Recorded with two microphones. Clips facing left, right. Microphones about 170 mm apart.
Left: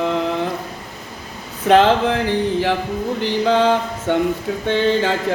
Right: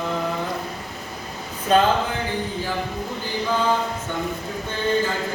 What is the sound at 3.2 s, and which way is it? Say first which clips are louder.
Mantra: left 7 dB; 80° left.